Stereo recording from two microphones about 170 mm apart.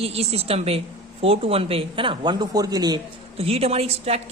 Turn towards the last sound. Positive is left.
turn(degrees=-35)  # may be behind; listen again after turning